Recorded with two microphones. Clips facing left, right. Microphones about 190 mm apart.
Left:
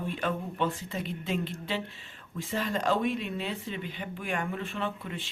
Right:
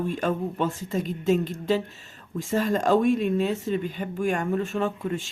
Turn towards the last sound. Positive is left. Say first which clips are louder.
# right 7 dB
turn(degrees=-45)  # may be behind; listen again after turning